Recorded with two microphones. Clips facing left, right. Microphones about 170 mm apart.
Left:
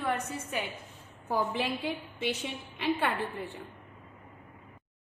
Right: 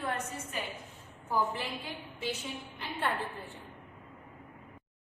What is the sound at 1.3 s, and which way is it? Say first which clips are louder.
Speech: left 2 dB; 85° left.